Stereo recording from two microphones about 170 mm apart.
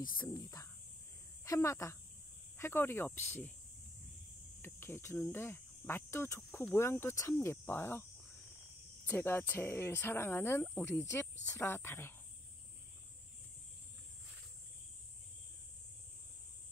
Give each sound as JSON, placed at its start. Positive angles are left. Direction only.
{"t": 0.2, "sound": "speech", "side_deg": 20}
{"t": 4.6, "sound": "speech", "side_deg": 15}
{"t": 9.0, "sound": "speech", "side_deg": 10}